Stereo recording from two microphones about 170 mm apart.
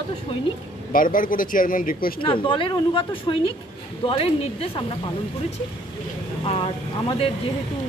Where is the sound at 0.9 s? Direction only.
55° left (ahead or behind).